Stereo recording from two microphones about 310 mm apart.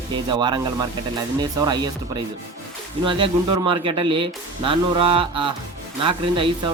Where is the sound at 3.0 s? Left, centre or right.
Centre.